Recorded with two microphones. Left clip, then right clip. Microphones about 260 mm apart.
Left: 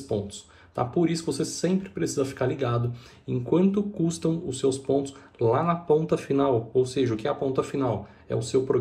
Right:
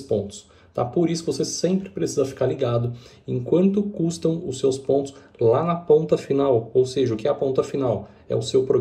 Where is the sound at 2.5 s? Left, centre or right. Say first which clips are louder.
Right 5 dB; centre.